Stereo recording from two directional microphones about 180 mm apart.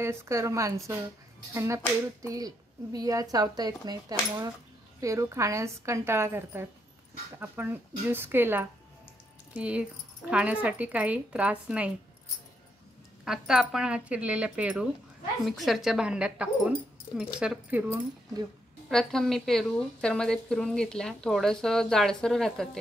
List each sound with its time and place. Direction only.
0.0 s a woman's voice: 15° right (ahead or behind)
13.2 s a woman's voice: 5° right (ahead or behind)
18.9 s a woman's voice: 5° left (ahead or behind)